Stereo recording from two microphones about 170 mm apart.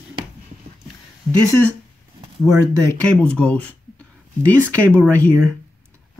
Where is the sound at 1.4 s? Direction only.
15° left (ahead or behind).